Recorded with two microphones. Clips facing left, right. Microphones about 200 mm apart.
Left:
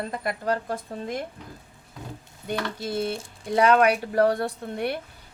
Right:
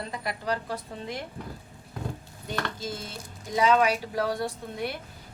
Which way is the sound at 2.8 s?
65° left (ahead or behind).